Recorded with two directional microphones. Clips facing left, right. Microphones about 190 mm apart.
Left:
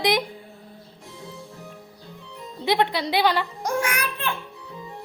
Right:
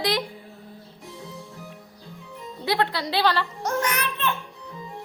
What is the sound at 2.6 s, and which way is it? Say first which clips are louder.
Speech: left 3 dB; 20° left (ahead or behind).